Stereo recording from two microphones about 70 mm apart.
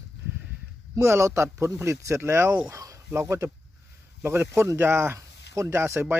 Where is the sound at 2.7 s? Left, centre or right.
Right.